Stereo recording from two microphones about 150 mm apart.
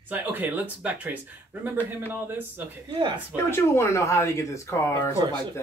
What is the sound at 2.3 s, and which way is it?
Speech, 15° right (ahead or behind).